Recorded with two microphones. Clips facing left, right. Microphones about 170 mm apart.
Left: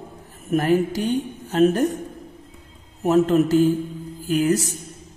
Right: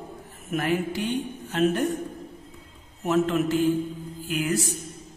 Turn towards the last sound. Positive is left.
turn(degrees=40)  # may be behind; listen again after turning